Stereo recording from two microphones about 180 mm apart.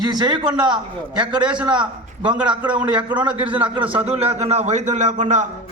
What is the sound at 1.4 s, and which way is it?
Speech, 5° right (ahead or behind).